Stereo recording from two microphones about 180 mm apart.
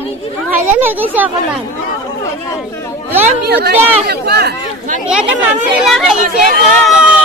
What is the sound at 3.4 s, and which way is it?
Speech, 60° right (ahead or behind).